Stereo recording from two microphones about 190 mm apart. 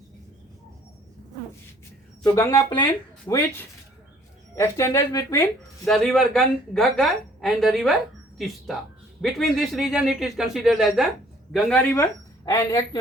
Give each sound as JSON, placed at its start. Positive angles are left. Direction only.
{"t": 2.2, "sound": "speech", "side_deg": 15}
{"t": 5.8, "sound": "a woman's voice", "side_deg": 5}